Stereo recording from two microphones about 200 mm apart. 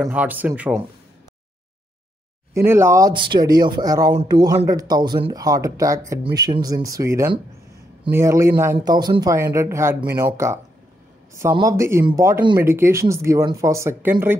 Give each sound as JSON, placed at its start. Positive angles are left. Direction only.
{"t": 0.0, "sound": "speech", "side_deg": -10}
{"t": 2.5, "sound": "speech", "side_deg": -15}